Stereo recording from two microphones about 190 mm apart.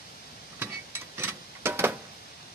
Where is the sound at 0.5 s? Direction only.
10° right (ahead or behind).